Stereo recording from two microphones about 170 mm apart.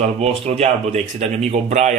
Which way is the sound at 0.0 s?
40° right (ahead or behind).